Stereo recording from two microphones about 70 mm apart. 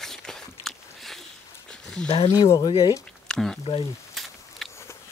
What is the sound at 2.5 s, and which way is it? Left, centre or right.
Speech, left.